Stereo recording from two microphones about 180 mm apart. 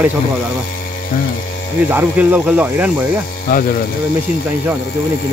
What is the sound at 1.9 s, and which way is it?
Speech, 10° right (ahead or behind).